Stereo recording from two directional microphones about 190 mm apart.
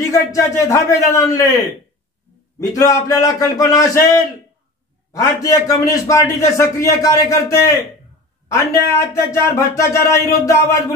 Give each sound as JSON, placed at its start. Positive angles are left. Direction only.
{"t": 0.0, "sound": "a man's voice", "side_deg": 15}
{"t": 2.6, "sound": "a man's voice", "side_deg": 20}